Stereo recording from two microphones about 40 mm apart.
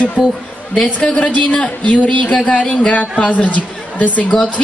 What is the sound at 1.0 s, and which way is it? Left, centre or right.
A man's voice, left.